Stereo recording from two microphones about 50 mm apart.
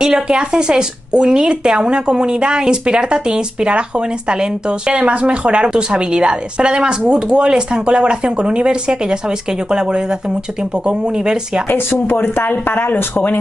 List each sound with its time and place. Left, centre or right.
0.0 s a woman's voice: centre
11.7 s speech: left